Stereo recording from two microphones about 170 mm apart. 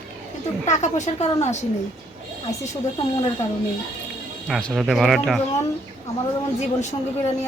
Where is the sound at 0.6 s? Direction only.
45° left (ahead or behind).